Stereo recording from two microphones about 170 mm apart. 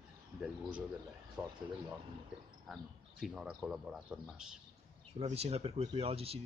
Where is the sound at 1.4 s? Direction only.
5° right (ahead or behind).